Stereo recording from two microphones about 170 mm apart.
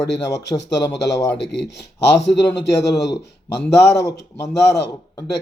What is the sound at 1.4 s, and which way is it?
Speech, 90° left.